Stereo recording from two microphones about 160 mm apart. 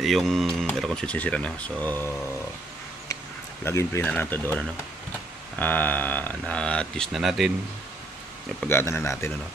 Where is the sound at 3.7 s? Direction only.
15° left (ahead or behind); by 7.5 s centre (ahead or behind).